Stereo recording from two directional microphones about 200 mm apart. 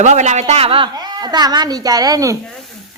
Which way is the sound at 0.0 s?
35° right (ahead or behind).